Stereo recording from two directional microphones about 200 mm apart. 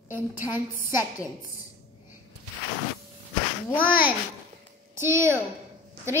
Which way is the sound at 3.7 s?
10° right (ahead or behind).